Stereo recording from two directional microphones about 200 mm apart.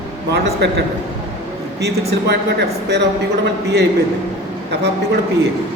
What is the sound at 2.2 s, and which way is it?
A man's voice, 55° right (ahead or behind).